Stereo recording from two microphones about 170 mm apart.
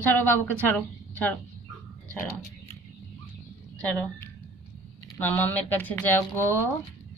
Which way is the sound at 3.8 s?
5° left (ahead or behind).